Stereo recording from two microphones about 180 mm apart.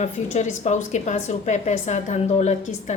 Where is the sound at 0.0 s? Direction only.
40° left (ahead or behind).